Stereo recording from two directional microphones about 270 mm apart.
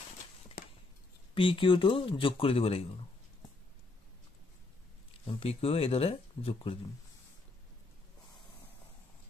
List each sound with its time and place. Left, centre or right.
0.6 s a sound: left
1.3 s speech: centre
5.2 s speech: left